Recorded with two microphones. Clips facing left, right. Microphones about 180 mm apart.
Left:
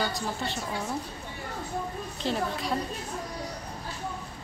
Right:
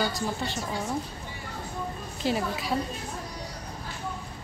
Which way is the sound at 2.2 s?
5° right (ahead or behind).